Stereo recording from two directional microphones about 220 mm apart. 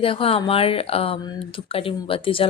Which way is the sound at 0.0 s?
25° left (ahead or behind).